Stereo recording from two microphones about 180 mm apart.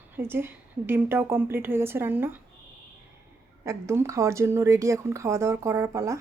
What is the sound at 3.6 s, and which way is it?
A woman's voice, 15° right (ahead or behind).